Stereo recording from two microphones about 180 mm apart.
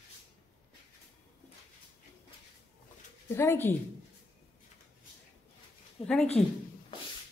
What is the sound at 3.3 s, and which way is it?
Speech, 15° left (ahead or behind).